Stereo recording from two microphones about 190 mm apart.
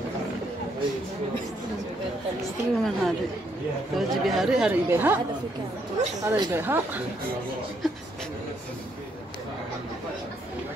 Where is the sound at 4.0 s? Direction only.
Centre (ahead or behind).